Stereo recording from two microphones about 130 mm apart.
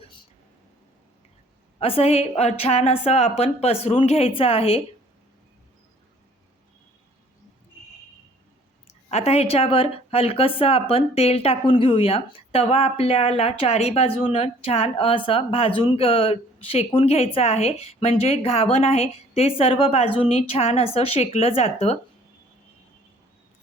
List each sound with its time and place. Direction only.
1.8 s speech: 50° left (ahead or behind)
9.0 s speech: 55° left (ahead or behind)